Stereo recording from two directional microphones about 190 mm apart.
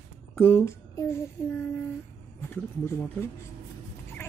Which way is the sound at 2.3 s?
10° left (ahead or behind).